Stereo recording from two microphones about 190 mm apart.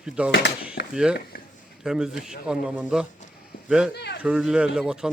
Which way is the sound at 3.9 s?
60° left (ahead or behind).